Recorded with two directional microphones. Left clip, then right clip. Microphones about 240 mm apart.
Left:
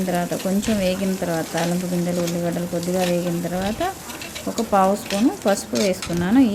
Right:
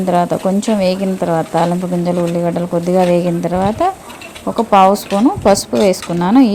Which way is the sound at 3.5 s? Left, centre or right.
Right.